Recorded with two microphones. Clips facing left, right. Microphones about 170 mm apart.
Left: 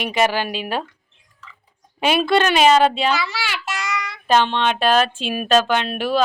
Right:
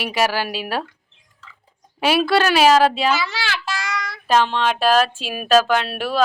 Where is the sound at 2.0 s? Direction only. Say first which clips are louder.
Even; 5° right (ahead or behind).